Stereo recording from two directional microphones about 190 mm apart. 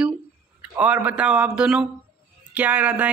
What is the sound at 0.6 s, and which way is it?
Speech, 5° right (ahead or behind).